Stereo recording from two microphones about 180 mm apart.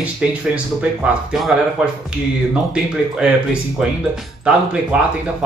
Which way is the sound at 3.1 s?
5° right (ahead or behind).